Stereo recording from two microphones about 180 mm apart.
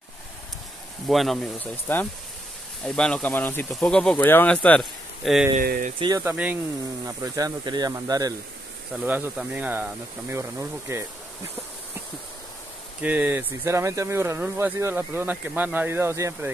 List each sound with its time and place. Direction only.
1.0 s speech: centre (ahead or behind)
5.6 s speech: 50° right (ahead or behind)
5.9 s speech: 20° right (ahead or behind)
6.3 s speech: 5° right (ahead or behind)
7.2 s speech: 20° right (ahead or behind)
8.9 s speech: 10° right (ahead or behind)
13.0 s speech: 10° right (ahead or behind)